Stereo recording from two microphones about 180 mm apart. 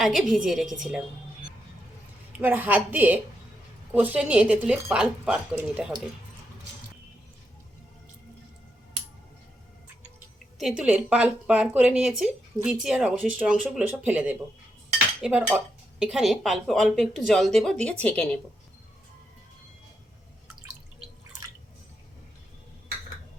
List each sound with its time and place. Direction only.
0.0 s speech: centre (ahead or behind)
2.4 s a woman's voice: 10° right (ahead or behind)
10.6 s speech: 5° right (ahead or behind)